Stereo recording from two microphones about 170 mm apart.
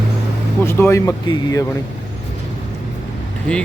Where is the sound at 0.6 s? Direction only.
15° left (ahead or behind).